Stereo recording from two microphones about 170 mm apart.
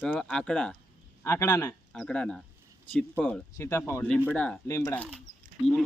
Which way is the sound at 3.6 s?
15° left (ahead or behind).